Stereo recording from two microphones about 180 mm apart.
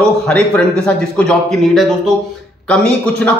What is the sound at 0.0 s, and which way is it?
A man's voice, 5° left (ahead or behind).